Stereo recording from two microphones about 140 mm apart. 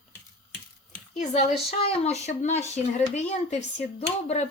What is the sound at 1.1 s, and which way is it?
Speech, 55° left (ahead or behind).